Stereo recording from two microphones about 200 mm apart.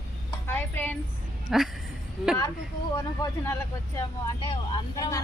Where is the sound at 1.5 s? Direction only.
Centre (ahead or behind).